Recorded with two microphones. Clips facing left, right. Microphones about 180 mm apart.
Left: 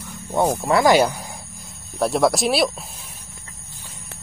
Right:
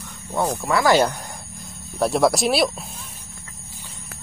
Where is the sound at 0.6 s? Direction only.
25° left (ahead or behind).